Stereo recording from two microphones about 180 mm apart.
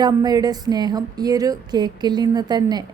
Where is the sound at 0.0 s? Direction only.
20° right (ahead or behind).